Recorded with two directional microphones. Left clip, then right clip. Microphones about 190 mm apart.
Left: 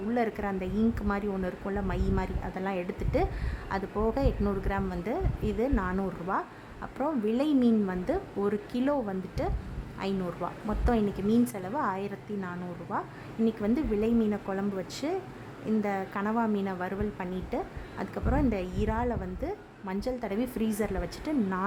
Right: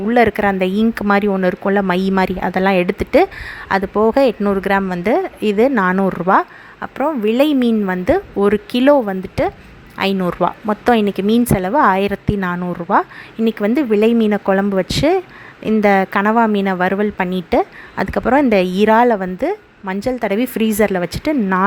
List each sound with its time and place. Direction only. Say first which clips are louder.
0.1 s a woman's voice: right 17 dB; 35° right (ahead or behind)